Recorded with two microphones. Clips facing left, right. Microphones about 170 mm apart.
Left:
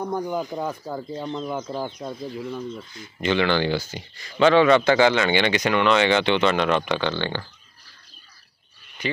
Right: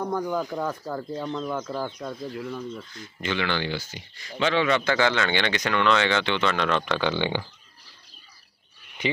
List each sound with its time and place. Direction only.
0.1 s speech: 20° left (ahead or behind)
1.2 s speech: 20° left (ahead or behind)
3.2 s speech: 30° left (ahead or behind)
4.9 s speech: 15° left (ahead or behind)
7.0 s speech: 10° right (ahead or behind)